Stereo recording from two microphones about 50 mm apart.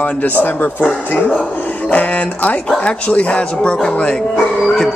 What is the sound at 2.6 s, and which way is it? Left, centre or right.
Speech, left.